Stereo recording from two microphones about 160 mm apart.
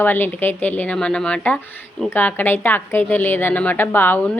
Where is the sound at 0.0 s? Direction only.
10° left (ahead or behind).